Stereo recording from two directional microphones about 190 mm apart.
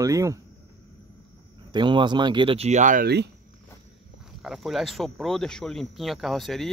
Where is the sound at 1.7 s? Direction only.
25° right (ahead or behind); by 3.3 s 55° right (ahead or behind).